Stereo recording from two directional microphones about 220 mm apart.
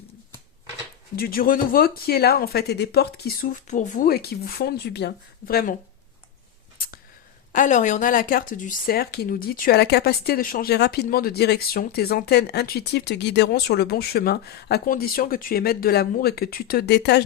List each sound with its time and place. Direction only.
1.1 s speech: 45° left (ahead or behind)
6.7 s a sound: 40° left (ahead or behind)
7.5 s speech: 35° left (ahead or behind)